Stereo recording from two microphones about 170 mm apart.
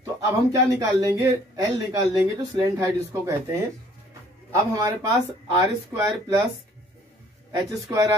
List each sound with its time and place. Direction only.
0.0 s a man's voice: 20° right (ahead or behind)
7.5 s a man's voice: 20° right (ahead or behind)